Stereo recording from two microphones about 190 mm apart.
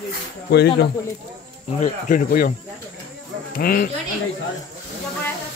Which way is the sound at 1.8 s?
45° left (ahead or behind).